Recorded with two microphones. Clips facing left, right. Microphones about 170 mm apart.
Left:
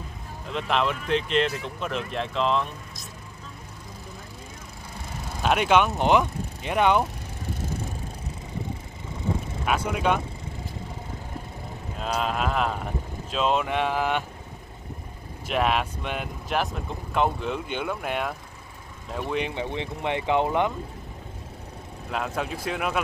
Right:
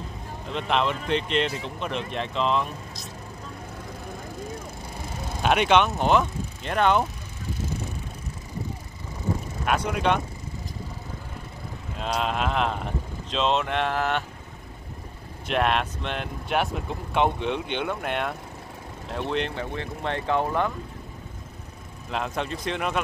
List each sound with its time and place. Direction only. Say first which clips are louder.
0.5 s speech: even; centre (ahead or behind)
5.4 s speech: right 1 dB; centre (ahead or behind)
9.7 s speech: right 1 dB; 5° left (ahead or behind)
12.0 s speech: even; centre (ahead or behind)
15.4 s speech: even; 5° left (ahead or behind)
22.1 s speech: even; 5° left (ahead or behind)